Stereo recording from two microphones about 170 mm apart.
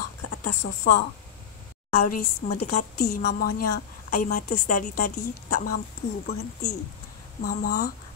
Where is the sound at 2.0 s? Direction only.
45° left (ahead or behind).